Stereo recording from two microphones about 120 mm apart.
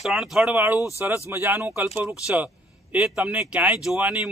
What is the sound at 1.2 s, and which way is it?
Speech, 20° right (ahead or behind).